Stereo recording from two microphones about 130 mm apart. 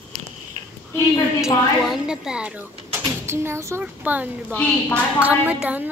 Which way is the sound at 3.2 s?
20° right (ahead or behind).